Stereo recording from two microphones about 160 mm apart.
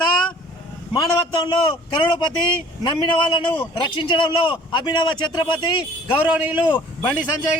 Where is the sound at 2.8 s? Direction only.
30° left (ahead or behind).